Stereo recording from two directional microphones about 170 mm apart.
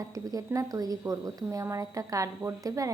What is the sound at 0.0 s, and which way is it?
Speech, 20° right (ahead or behind).